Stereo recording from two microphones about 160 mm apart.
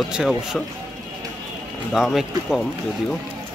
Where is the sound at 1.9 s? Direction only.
Centre (ahead or behind).